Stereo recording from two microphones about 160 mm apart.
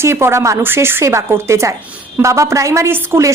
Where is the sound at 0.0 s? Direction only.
15° right (ahead or behind).